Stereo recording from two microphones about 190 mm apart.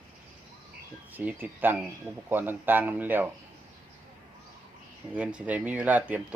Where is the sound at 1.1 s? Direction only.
10° right (ahead or behind).